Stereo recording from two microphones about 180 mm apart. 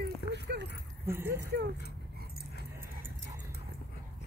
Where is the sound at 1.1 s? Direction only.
15° right (ahead or behind).